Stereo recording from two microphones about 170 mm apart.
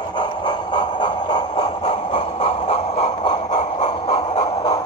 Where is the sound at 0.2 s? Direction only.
25° left (ahead or behind).